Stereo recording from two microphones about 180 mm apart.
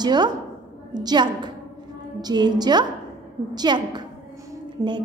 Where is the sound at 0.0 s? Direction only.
25° right (ahead or behind).